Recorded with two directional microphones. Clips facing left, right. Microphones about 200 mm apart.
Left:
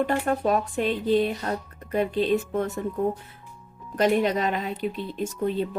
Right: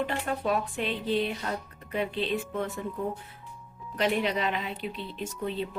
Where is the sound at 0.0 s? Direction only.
45° left (ahead or behind).